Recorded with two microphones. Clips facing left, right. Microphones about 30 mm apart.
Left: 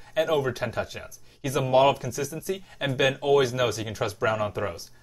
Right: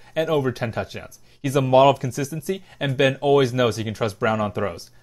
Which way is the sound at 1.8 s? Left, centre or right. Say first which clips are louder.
Right 5 dB; right.